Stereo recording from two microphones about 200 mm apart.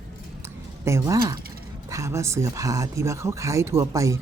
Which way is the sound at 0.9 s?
15° right (ahead or behind).